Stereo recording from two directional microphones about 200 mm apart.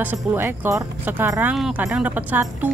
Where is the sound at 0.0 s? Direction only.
10° right (ahead or behind).